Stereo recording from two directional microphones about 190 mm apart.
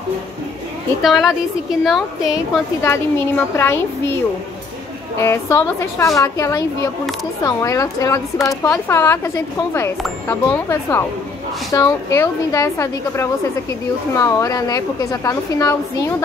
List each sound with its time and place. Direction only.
1.0 s a woman's voice: centre (ahead or behind)
2.8 s a woman's voice: 15° left (ahead or behind)
5.2 s a woman's voice: 15° left (ahead or behind)